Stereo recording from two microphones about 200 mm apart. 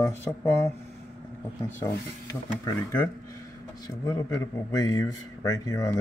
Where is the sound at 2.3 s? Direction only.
15° left (ahead or behind).